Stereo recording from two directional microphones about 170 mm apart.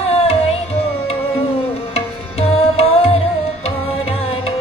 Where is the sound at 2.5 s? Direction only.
35° left (ahead or behind).